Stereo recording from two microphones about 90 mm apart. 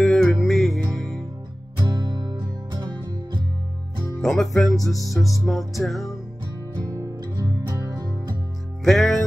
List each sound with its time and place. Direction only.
0.0 s music: centre (ahead or behind)
1.9 s music: 50° right (ahead or behind)
4.2 s music: 5° left (ahead or behind)
6.9 s music: 45° right (ahead or behind)
8.8 s music: centre (ahead or behind)